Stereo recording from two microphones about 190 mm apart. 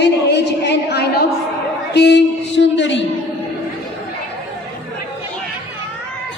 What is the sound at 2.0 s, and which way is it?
A woman's voice, 65° left (ahead or behind).